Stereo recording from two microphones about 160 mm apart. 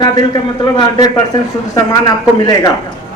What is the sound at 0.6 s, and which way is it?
A man's voice, 25° left (ahead or behind).